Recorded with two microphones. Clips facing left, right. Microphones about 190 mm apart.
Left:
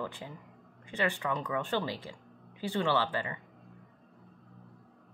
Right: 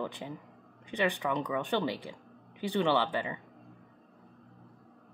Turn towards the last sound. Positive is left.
turn(degrees=-20)  # may be behind; listen again after turning